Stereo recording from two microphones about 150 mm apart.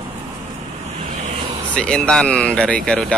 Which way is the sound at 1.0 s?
45° right (ahead or behind).